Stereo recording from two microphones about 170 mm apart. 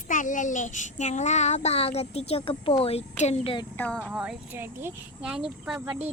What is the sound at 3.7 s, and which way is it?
Speech, 10° left (ahead or behind).